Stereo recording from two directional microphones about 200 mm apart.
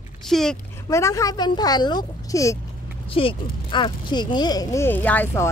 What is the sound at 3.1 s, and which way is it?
Speech, 25° left (ahead or behind).